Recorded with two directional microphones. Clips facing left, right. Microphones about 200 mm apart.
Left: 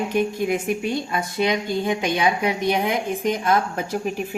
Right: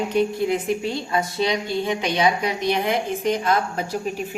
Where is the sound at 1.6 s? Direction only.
45° left (ahead or behind).